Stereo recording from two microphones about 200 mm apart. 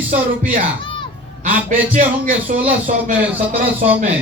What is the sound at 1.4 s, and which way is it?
A man's voice, 40° right (ahead or behind).